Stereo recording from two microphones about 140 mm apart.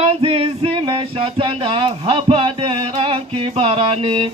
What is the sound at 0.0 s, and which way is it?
Music, 45° right (ahead or behind).